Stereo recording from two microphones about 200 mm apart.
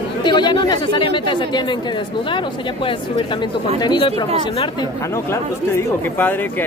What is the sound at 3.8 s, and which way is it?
Speech, 25° left (ahead or behind).